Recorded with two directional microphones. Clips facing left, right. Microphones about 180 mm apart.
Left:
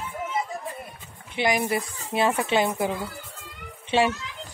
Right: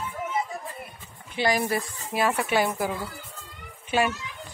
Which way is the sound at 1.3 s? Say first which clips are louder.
Left 1 dB; 20° left (ahead or behind).